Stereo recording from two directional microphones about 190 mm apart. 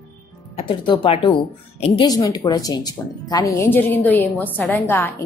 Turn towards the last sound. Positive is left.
turn(degrees=10)  # may be behind; listen again after turning